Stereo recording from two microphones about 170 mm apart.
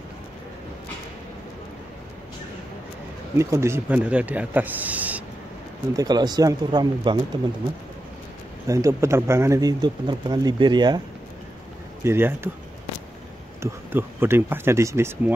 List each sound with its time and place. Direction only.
3.3 s speech: 15° right (ahead or behind)
5.9 s speech: 25° right (ahead or behind)
8.6 s speech: 20° right (ahead or behind)
12.0 s speech: 15° right (ahead or behind)
13.6 s speech: 15° right (ahead or behind)